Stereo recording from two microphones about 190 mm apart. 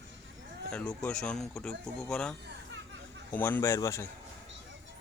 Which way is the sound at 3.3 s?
10° left (ahead or behind).